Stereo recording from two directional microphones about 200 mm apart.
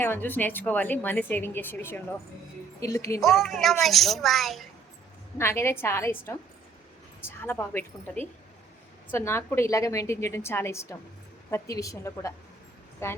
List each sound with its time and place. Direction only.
0.0 s speech: 10° left (ahead or behind)
3.2 s a woman's voice: centre (ahead or behind)
5.4 s speech: 10° left (ahead or behind)